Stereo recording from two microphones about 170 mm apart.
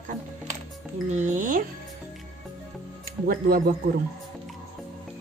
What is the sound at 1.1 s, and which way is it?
Speech, 45° right (ahead or behind).